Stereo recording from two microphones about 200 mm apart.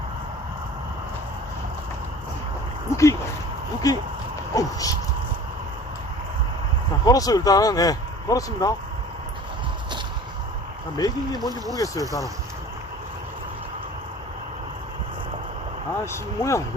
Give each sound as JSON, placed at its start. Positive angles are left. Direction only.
{"t": 2.9, "sound": "speech", "side_deg": 15}
{"t": 4.5, "sound": "a sound", "side_deg": 15}
{"t": 7.0, "sound": "speech", "side_deg": 20}
{"t": 10.9, "sound": "speech", "side_deg": 20}
{"t": 16.1, "sound": "speech", "side_deg": 15}